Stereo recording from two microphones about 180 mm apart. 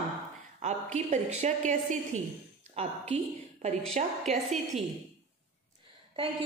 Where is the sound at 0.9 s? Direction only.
40° right (ahead or behind).